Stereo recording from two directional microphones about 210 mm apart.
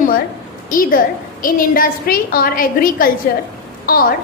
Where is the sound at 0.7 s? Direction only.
40° left (ahead or behind).